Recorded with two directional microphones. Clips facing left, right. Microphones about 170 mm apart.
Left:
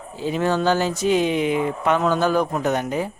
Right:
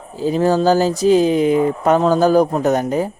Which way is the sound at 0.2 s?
40° right (ahead or behind).